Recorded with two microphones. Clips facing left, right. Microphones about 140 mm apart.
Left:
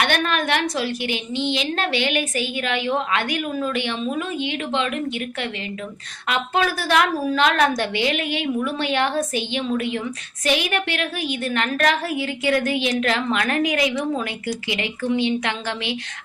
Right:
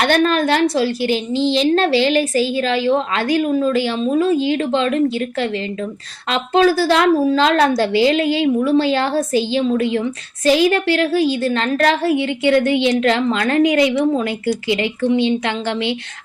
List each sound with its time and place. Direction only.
0.0 s a woman's voice: 35° right (ahead or behind)